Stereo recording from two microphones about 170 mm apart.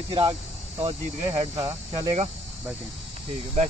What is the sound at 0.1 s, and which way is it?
Speech, 30° right (ahead or behind).